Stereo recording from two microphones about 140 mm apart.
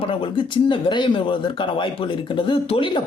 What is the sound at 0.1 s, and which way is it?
Speech, 40° left (ahead or behind).